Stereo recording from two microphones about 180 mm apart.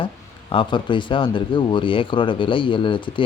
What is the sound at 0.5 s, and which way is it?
Speech, 25° left (ahead or behind).